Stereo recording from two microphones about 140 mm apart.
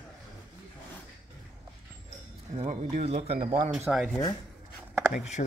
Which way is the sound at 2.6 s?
60° right (ahead or behind).